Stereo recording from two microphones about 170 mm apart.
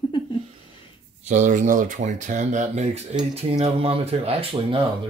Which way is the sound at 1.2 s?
45° right (ahead or behind).